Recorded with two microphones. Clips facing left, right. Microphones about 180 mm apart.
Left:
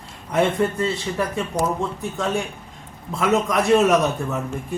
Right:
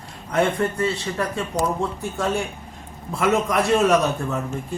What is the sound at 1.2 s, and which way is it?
Speech, 5° left (ahead or behind).